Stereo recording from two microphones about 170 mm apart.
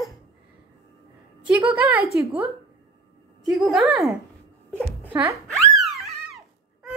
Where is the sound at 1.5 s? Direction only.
10° right (ahead or behind).